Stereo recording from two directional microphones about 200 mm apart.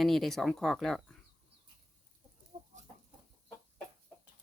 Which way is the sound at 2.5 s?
30° right (ahead or behind).